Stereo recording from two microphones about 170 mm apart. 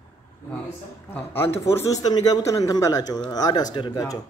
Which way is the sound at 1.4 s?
15° left (ahead or behind).